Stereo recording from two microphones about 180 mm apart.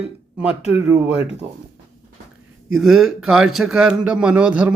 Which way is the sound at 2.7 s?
Centre (ahead or behind).